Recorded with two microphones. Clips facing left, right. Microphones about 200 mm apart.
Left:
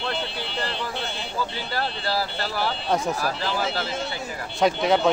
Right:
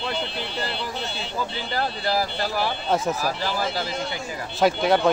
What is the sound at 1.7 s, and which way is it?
Speech, 15° right (ahead or behind).